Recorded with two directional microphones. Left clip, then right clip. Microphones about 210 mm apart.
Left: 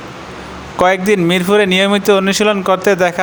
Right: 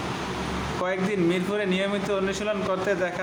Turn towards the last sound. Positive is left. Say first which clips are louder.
# left 13 dB
turn(degrees=50)  # may be behind; listen again after turning